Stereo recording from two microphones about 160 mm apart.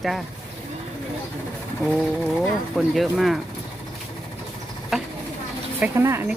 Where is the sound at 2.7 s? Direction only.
Centre (ahead or behind).